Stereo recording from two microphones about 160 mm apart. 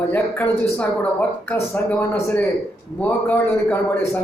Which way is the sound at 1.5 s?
15° left (ahead or behind).